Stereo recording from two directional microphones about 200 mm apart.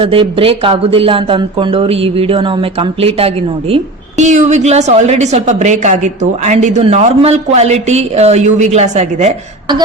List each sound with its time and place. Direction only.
0.0 s a woman's voice: 25° right (ahead or behind)